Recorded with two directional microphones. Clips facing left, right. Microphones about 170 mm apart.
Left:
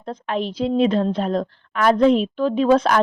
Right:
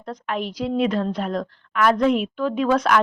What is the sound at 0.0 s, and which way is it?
A woman's voice, 25° left (ahead or behind).